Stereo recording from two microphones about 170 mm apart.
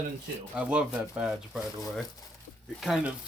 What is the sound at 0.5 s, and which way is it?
Speech, 5° right (ahead or behind).